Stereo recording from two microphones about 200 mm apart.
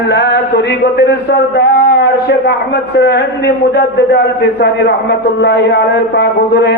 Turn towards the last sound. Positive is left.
turn(degrees=55)  # may be behind; listen again after turning